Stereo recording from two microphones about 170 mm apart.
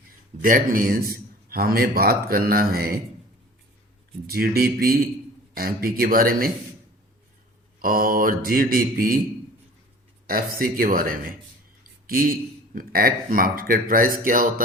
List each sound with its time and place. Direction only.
0.4 s a man's voice: 55° right (ahead or behind)
4.3 s a man's voice: 65° right (ahead or behind)
7.8 s a man's voice: 60° right (ahead or behind)
10.2 s a man's voice: 60° right (ahead or behind)